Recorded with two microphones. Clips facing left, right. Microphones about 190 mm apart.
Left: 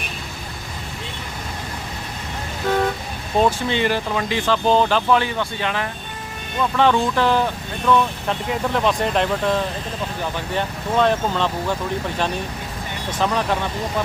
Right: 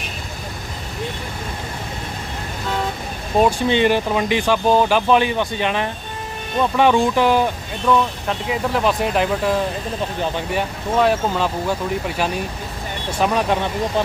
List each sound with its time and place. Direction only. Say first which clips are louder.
3.3 s speech: right 3 dB; 15° right (ahead or behind)